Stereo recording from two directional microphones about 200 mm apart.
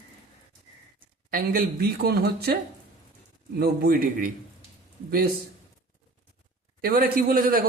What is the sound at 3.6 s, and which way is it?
Speech, 45° right (ahead or behind).